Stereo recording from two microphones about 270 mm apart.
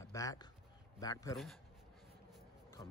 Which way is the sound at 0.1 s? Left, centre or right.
Centre.